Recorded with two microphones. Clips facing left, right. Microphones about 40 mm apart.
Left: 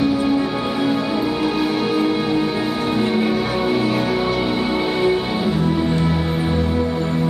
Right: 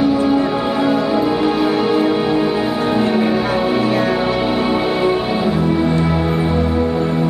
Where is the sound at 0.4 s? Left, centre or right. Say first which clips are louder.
Right 4 dB; centre.